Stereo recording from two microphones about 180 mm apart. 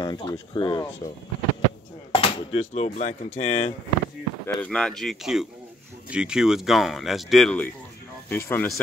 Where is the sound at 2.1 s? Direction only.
30° left (ahead or behind).